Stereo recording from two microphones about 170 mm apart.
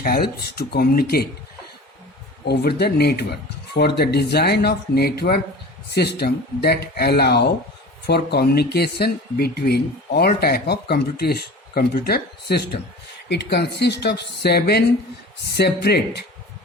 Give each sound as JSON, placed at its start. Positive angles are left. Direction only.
{"t": 0.0, "sound": "speech", "side_deg": 65}
{"t": 2.5, "sound": "speech", "side_deg": 75}